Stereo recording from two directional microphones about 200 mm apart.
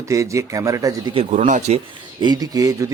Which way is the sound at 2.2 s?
20° right (ahead or behind).